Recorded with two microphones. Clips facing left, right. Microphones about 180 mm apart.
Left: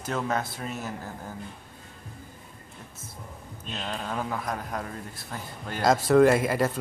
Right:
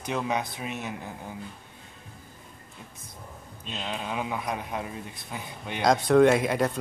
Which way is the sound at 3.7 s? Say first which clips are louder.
Even; 5° right (ahead or behind).